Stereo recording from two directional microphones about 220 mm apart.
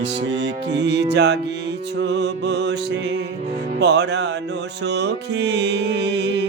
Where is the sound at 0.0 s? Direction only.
55° right (ahead or behind).